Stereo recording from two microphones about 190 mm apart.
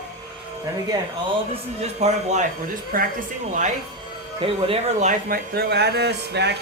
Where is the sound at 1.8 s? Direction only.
35° right (ahead or behind).